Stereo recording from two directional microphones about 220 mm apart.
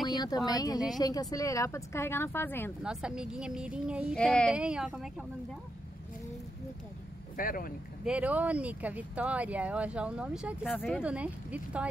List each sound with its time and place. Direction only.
0.0 s a sound: 20° left (ahead or behind)
0.5 s a woman's voice: 15° left (ahead or behind)
2.8 s speech: 5° right (ahead or behind)
7.3 s speech: 40° left (ahead or behind)
8.0 s speech: 5° right (ahead or behind)
10.6 s a woman's voice: 10° left (ahead or behind)
11.0 s speech: 5° right (ahead or behind)